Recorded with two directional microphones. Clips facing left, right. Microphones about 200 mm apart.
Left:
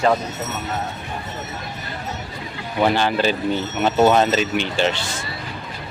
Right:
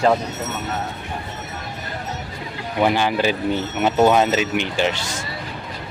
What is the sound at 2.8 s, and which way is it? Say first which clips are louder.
Speech: even; 10° right (ahead or behind).